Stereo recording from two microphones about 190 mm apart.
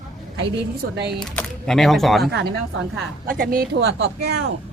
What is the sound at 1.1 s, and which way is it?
Speech, centre (ahead or behind).